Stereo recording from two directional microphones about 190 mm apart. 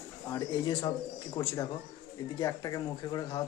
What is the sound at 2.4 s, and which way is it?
Speech, 20° left (ahead or behind).